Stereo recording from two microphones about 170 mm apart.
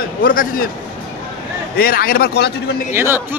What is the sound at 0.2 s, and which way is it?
Speech, 55° left (ahead or behind).